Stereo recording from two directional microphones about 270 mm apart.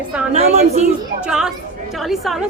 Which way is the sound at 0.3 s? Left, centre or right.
Right.